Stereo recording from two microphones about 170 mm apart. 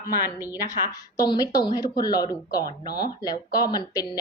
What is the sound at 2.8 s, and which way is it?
Speech, 65° left (ahead or behind).